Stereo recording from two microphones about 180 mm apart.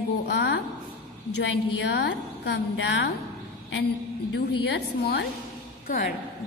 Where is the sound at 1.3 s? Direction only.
70° left (ahead or behind).